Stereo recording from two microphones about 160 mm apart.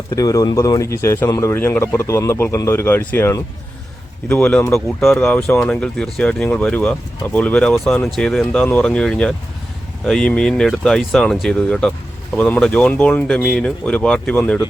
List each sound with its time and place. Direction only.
0.1 s speech: 20° left (ahead or behind)